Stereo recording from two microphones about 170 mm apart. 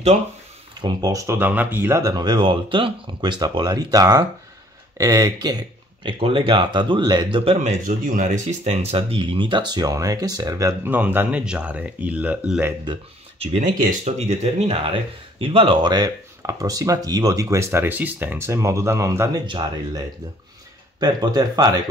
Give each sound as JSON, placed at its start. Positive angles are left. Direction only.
{"t": 0.7, "sound": "speech", "side_deg": -25}
{"t": 7.6, "sound": "speech", "side_deg": -50}
{"t": 13.4, "sound": "speech", "side_deg": -35}
{"t": 13.7, "sound": "speech", "side_deg": -50}